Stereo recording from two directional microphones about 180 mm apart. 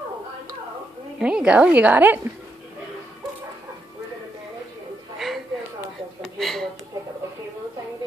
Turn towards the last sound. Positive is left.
turn(degrees=0)  # may be behind; listen again after turning